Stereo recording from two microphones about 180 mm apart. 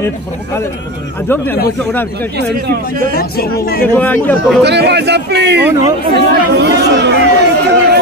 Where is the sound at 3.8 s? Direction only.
10° left (ahead or behind).